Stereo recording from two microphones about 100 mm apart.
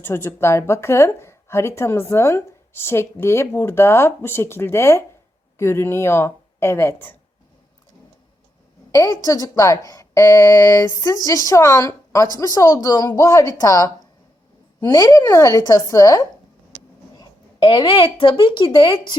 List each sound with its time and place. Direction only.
0.0 s a woman's voice: 25° left (ahead or behind)
8.9 s speech: 35° left (ahead or behind)
17.6 s speech: 60° left (ahead or behind)